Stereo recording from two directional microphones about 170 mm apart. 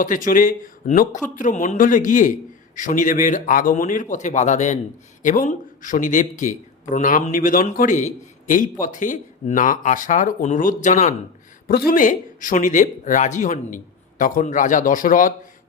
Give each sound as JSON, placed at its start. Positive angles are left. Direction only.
{"t": 0.0, "sound": "speech", "side_deg": 50}
{"t": 11.7, "sound": "speech", "side_deg": 60}